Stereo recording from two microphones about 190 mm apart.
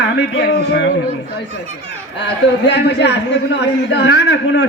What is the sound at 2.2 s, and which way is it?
A man's voice, 65° left (ahead or behind).